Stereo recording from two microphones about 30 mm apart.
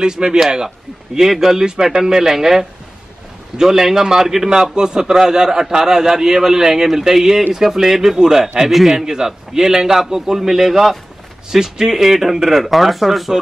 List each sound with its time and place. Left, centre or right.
0.4 s a man's voice: right; by 13.3 s centre